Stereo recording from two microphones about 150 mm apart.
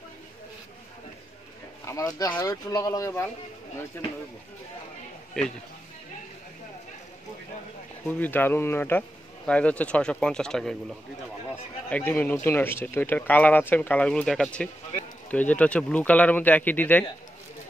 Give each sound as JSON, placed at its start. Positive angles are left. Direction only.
{"t": 1.9, "sound": "speech", "side_deg": 20}
{"t": 5.4, "sound": "speech", "side_deg": 5}
{"t": 8.1, "sound": "speech", "side_deg": 10}
{"t": 11.9, "sound": "speech", "side_deg": 10}